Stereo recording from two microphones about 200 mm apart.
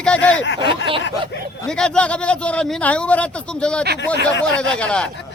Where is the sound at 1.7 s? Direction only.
5° left (ahead or behind).